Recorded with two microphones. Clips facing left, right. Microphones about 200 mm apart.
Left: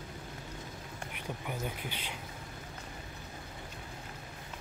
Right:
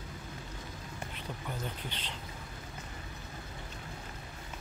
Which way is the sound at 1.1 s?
10° left (ahead or behind).